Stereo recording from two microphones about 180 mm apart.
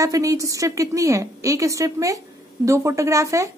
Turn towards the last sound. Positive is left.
turn(degrees=-15)  # may be behind; listen again after turning